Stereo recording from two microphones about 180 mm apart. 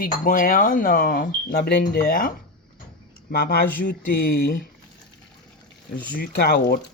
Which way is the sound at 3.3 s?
65° left (ahead or behind).